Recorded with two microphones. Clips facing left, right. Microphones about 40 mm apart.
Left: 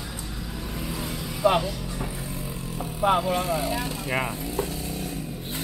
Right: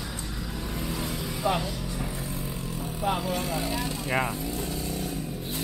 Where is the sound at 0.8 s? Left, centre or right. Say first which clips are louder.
Even; centre.